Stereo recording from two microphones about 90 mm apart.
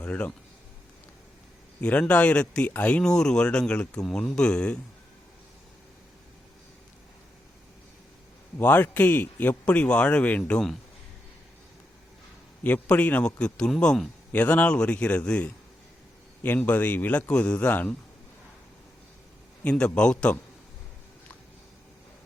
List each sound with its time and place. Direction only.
0.0 s speech: 15° left (ahead or behind)
1.8 s speech: 15° left (ahead or behind)
8.5 s a man's voice: 20° left (ahead or behind)
12.6 s speech: 15° left (ahead or behind)
16.6 s speech: 15° left (ahead or behind)
20.0 s speech: 10° left (ahead or behind)